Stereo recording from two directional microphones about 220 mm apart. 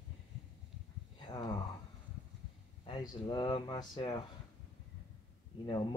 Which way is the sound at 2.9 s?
20° left (ahead or behind).